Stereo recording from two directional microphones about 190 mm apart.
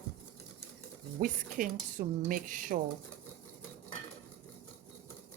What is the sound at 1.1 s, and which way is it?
Speech, 45° right (ahead or behind).